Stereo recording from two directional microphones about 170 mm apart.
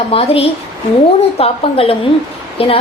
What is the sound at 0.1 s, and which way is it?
A woman's voice, 35° left (ahead or behind).